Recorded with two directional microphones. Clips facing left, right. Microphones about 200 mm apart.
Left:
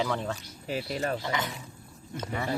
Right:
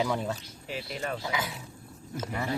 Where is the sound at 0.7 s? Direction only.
40° left (ahead or behind).